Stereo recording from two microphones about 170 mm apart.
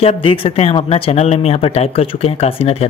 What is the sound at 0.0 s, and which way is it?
Speech, 35° left (ahead or behind).